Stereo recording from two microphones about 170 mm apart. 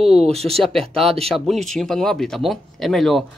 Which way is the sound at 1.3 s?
Centre (ahead or behind).